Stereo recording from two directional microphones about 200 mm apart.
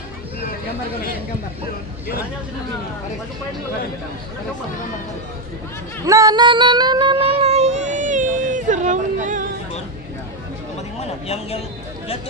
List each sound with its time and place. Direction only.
6.0 s child singing: 15° right (ahead or behind); by 9.5 s 40° right (ahead or behind)
11.0 s speech: 30° left (ahead or behind)